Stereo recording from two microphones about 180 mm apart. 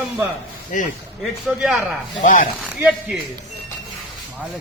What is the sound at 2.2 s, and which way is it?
Speech, 45° left (ahead or behind).